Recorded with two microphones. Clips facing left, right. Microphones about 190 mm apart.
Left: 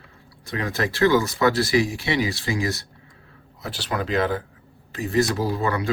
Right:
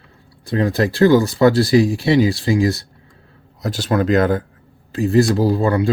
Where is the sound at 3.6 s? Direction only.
45° right (ahead or behind).